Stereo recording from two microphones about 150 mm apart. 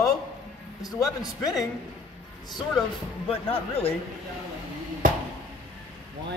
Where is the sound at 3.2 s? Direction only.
40° left (ahead or behind).